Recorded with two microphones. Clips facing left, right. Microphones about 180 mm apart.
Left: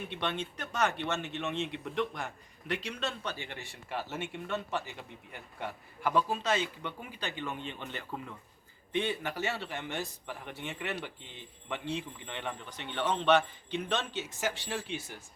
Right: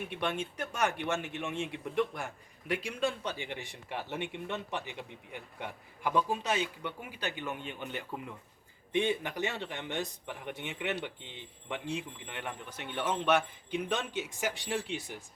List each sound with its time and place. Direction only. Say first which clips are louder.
0.1 s a man's voice: right 1 dB; 10° right (ahead or behind)